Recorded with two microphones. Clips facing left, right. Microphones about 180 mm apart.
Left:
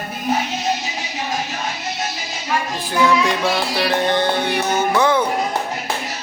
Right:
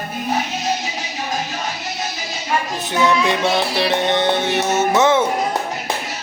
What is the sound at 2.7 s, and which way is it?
Music, 20° right (ahead or behind).